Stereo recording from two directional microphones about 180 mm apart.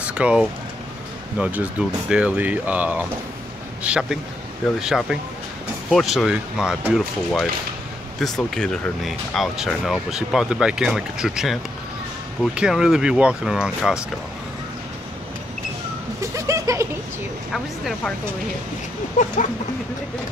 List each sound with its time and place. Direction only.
0.0 s a sound: 5° right (ahead or behind)
1.4 s speech: 10° right (ahead or behind)
12.5 s speech: 5° right (ahead or behind)
16.2 s a sound: 15° right (ahead or behind)
17.5 s speech: centre (ahead or behind)
19.2 s speech: 50° left (ahead or behind)